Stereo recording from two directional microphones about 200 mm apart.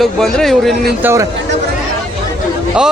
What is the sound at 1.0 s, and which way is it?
Speech, 10° right (ahead or behind).